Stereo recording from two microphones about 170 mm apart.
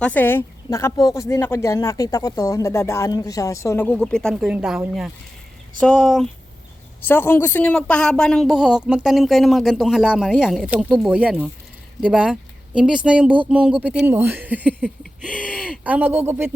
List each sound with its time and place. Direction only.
0.0 s speech: 10° left (ahead or behind)
5.8 s a woman's voice: 5° left (ahead or behind); by 14.8 s 10° right (ahead or behind)
15.2 s a sound: 5° left (ahead or behind)
15.4 s speech: 5° right (ahead or behind)